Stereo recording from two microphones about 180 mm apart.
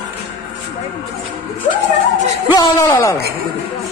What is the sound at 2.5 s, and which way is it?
Speech, 20° left (ahead or behind).